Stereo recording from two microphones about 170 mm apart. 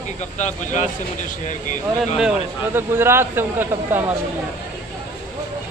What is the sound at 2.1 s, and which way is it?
Speech, 10° right (ahead or behind).